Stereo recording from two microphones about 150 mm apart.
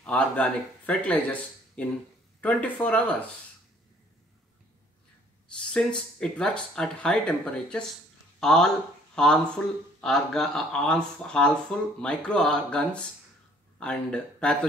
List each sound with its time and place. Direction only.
0.0 s speech: 10° left (ahead or behind)
5.7 s speech: 5° left (ahead or behind)